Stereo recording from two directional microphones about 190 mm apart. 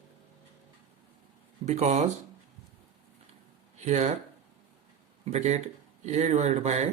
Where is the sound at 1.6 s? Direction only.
40° right (ahead or behind).